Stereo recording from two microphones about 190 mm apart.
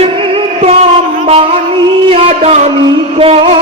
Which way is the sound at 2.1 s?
30° right (ahead or behind).